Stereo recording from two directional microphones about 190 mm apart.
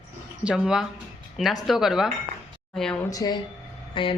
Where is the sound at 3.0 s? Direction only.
20° left (ahead or behind).